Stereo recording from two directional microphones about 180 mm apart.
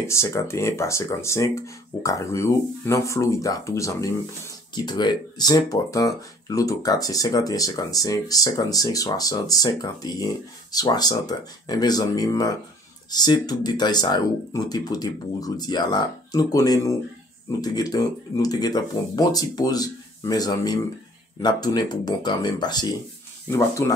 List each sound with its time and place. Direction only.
0.0 s speech: 15° left (ahead or behind)